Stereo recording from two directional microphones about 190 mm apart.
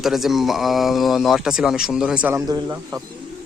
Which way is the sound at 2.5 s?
20° right (ahead or behind).